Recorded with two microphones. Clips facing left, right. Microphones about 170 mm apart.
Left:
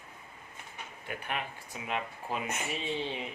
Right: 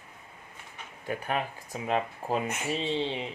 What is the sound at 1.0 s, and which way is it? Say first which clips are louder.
Speech: right 7 dB; 40° right (ahead or behind).